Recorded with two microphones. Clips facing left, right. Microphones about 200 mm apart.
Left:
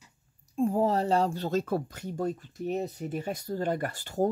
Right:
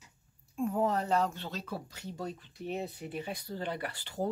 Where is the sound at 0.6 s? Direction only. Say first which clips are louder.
Left 5 dB; 30° left (ahead or behind).